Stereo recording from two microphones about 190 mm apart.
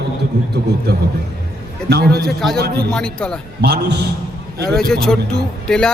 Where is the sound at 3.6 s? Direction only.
60° right (ahead or behind).